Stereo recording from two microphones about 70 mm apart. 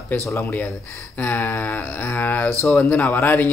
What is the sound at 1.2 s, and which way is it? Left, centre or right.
Speech, left.